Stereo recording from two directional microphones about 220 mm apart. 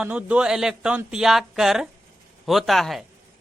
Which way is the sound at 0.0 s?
5° right (ahead or behind).